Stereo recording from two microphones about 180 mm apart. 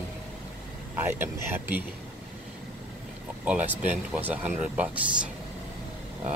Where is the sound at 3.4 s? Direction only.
10° right (ahead or behind).